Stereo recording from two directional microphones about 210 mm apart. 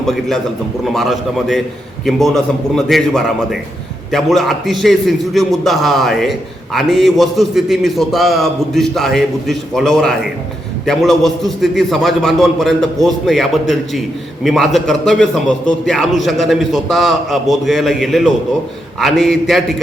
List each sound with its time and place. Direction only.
0.0 s a man's voice: centre (ahead or behind)